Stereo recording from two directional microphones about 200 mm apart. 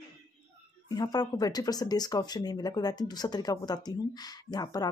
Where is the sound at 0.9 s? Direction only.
20° left (ahead or behind).